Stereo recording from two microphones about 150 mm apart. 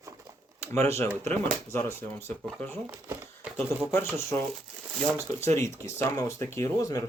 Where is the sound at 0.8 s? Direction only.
15° left (ahead or behind).